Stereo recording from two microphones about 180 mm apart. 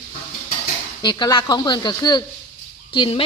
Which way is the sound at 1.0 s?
25° left (ahead or behind).